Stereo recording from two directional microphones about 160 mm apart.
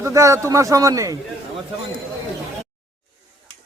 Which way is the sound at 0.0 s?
20° right (ahead or behind).